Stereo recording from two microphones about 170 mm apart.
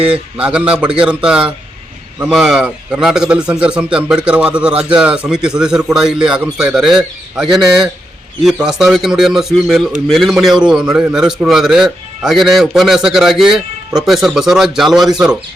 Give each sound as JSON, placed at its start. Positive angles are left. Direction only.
{"t": 0.0, "sound": "a man's voice", "side_deg": -5}
{"t": 8.6, "sound": "a man's voice", "side_deg": 0}